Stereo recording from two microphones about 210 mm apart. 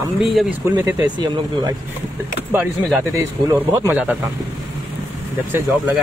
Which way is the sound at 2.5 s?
10° right (ahead or behind).